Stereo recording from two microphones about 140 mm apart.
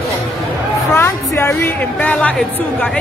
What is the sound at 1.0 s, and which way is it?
A woman's voice, 15° left (ahead or behind).